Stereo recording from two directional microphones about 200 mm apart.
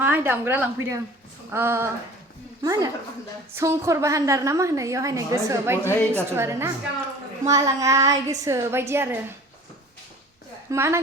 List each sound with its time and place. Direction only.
0.0 s a woman's voice: 10° right (ahead or behind)
5.8 s a woman's voice: 10° left (ahead or behind)
6.3 s a woman's voice: 10° right (ahead or behind)
10.7 s a woman's voice: 15° right (ahead or behind)